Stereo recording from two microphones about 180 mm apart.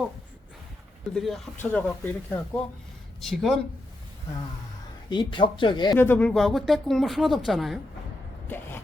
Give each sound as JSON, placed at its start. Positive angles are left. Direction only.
{"t": 1.1, "sound": "speech", "side_deg": 0}
{"t": 5.0, "sound": "speech", "side_deg": 25}
{"t": 6.0, "sound": "speech", "side_deg": 10}
{"t": 8.4, "sound": "a sound", "side_deg": 10}